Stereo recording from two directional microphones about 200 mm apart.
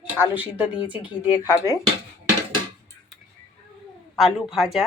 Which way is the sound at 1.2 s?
10° right (ahead or behind).